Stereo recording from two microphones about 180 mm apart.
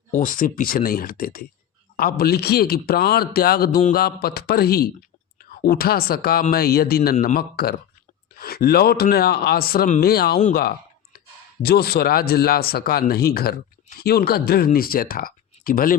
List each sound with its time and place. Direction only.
0.2 s speech: 50° left (ahead or behind)
10.5 s a sound: 60° left (ahead or behind)
11.6 s speech: 60° left (ahead or behind)